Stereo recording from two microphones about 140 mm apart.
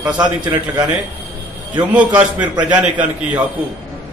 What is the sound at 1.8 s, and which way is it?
A man's voice, 10° right (ahead or behind).